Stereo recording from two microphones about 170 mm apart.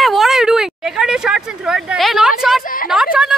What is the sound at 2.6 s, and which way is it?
Speech, 55° left (ahead or behind).